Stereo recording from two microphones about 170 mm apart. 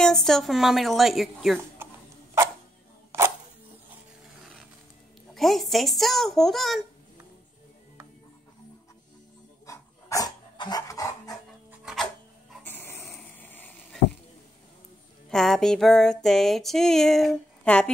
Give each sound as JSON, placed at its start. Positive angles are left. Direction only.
{"t": 0.0, "sound": "music", "side_deg": 0}
{"t": 1.8, "sound": "a sound", "side_deg": -15}
{"t": 3.1, "sound": "a sound", "side_deg": -15}
{"t": 4.4, "sound": "music", "side_deg": 0}
{"t": 9.7, "sound": "dog", "side_deg": 20}
{"t": 11.8, "sound": "music", "side_deg": 0}
{"t": 12.6, "sound": "vehicle", "side_deg": 10}
{"t": 15.2, "sound": "music", "side_deg": 0}